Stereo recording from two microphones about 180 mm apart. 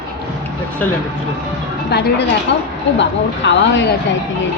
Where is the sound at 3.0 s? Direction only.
80° left.